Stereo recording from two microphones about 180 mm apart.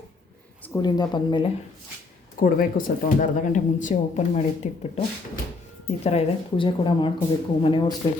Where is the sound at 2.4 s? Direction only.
50° left (ahead or behind).